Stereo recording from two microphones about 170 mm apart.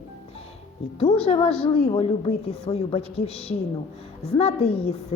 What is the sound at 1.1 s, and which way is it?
A woman's voice, 35° left (ahead or behind).